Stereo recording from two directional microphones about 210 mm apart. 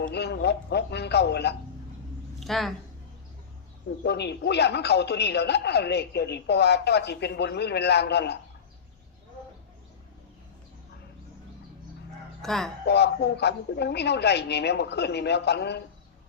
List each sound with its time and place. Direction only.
0.0 s speech: 50° left (ahead or behind)
2.4 s a woman's voice: centre (ahead or behind)
4.0 s speech: 55° left (ahead or behind)
12.4 s speech: centre (ahead or behind)
12.8 s speech: 50° left (ahead or behind)